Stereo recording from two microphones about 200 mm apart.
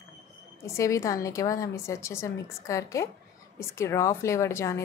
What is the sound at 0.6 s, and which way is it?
A woman's voice, 15° left (ahead or behind).